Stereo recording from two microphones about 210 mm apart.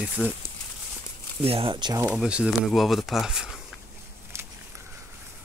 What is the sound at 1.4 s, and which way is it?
Speech, 25° right (ahead or behind).